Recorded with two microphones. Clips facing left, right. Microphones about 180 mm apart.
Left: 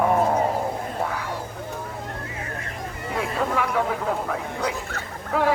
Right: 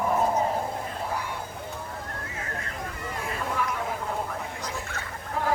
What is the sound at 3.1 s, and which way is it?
A man's voice, 75° left (ahead or behind).